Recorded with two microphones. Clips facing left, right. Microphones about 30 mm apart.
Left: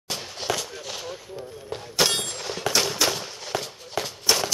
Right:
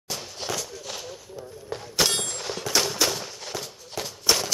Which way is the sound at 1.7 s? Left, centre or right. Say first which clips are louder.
Left 1 dB; centre.